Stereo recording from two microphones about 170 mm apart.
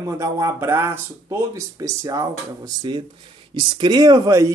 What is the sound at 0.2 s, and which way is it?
Speech, 15° right (ahead or behind).